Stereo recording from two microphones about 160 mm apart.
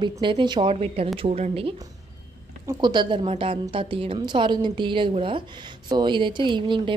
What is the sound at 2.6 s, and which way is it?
A woman's voice, 25° right (ahead or behind).